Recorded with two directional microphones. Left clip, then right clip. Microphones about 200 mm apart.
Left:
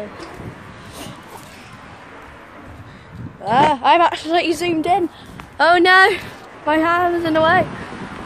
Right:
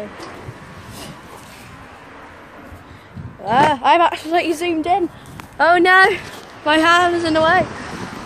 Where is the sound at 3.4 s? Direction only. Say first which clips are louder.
Even; 5° right (ahead or behind).